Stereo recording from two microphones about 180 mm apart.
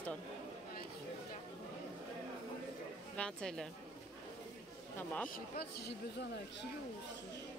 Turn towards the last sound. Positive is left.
turn(degrees=60)  # may be behind; listen again after turning